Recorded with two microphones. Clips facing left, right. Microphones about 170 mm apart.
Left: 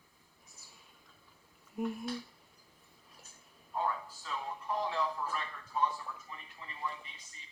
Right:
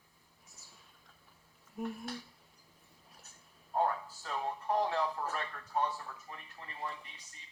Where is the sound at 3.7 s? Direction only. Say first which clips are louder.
Right 3 dB; 50° right (ahead or behind).